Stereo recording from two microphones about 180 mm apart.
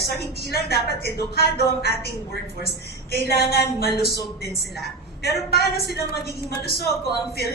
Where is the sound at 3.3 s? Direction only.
65° left (ahead or behind).